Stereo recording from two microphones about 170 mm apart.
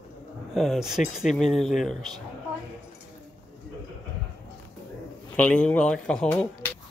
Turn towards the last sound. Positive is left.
turn(degrees=10)  # may be behind; listen again after turning